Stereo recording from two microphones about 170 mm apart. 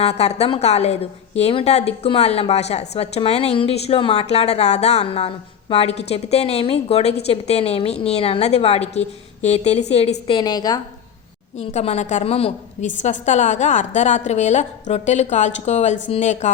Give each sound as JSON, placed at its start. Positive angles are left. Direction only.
{"t": 0.0, "sound": "a woman's voice", "side_deg": 40}
{"t": 11.5, "sound": "a woman's voice", "side_deg": 40}